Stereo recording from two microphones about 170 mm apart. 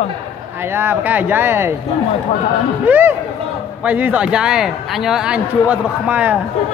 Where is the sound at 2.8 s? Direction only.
10° right (ahead or behind).